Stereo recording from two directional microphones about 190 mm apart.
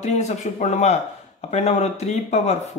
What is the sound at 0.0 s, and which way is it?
Speech, 40° left (ahead or behind).